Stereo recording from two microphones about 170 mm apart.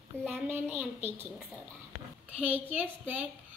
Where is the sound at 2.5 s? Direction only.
10° right (ahead or behind).